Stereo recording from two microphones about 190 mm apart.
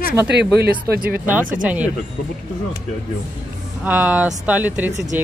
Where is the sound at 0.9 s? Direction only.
50° right (ahead or behind).